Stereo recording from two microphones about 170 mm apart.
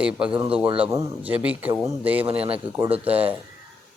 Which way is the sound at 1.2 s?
10° right (ahead or behind).